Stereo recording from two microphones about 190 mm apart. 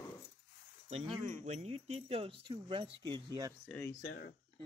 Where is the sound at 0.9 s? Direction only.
35° right (ahead or behind).